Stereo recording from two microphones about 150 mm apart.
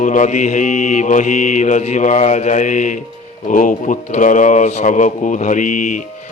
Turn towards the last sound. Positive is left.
turn(degrees=60)  # may be behind; listen again after turning